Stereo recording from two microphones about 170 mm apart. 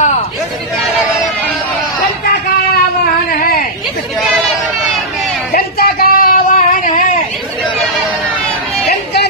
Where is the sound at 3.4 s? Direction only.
60° left (ahead or behind).